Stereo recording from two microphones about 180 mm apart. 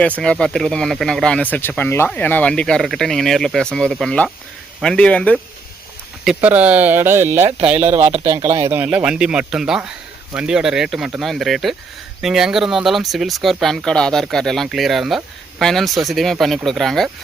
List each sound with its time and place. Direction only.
0.2 s speech: 5° left (ahead or behind)
6.2 s speech: 10° right (ahead or behind)
7.9 s speech: 35° right (ahead or behind)
8.7 s speech: 10° right (ahead or behind)